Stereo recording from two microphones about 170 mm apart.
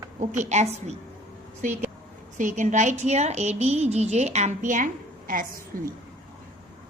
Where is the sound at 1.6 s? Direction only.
45° right (ahead or behind).